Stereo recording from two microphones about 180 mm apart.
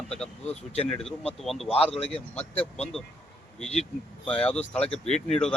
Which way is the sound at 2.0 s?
5° left (ahead or behind).